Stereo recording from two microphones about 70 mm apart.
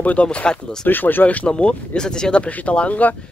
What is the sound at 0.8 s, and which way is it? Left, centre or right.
Speech, left.